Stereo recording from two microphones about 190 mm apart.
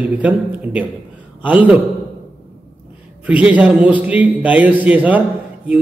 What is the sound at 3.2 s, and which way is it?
A man's voice, 5° right (ahead or behind).